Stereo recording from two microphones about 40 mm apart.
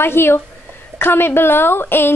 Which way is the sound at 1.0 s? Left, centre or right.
Left.